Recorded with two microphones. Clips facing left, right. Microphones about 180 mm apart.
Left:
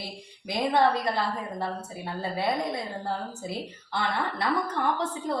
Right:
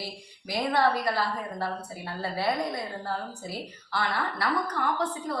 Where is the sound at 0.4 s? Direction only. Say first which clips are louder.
Left 2 dB; 20° left (ahead or behind).